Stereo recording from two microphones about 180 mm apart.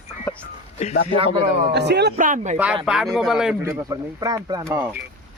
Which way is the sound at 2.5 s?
10° right (ahead or behind).